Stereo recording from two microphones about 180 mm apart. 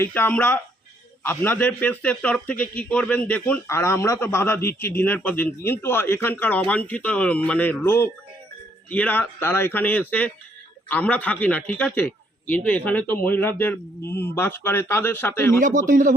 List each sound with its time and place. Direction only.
0.0 s speech: 10° left (ahead or behind)
15.6 s speech: 45° right (ahead or behind)